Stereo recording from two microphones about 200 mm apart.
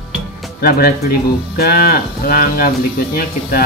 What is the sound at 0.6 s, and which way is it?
Speech, 50° left (ahead or behind).